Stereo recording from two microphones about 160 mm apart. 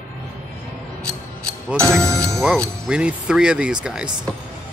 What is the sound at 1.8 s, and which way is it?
Speech, 15° right (ahead or behind).